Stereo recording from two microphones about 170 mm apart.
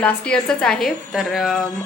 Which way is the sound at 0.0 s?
5° left (ahead or behind).